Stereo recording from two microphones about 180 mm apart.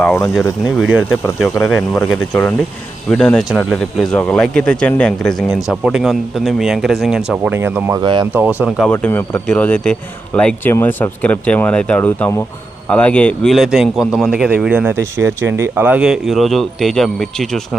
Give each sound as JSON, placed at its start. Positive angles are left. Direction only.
{"t": 0.0, "sound": "speech", "side_deg": 5}
{"t": 0.6, "sound": "a man's voice", "side_deg": 0}
{"t": 8.0, "sound": "speech", "side_deg": -25}
{"t": 8.3, "sound": "speech", "side_deg": -10}
{"t": 8.9, "sound": "a man's voice", "side_deg": 10}